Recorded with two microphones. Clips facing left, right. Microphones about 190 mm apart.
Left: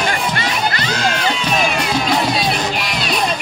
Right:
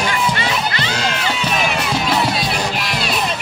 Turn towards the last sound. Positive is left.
turn(degrees=-5)  # may be behind; listen again after turning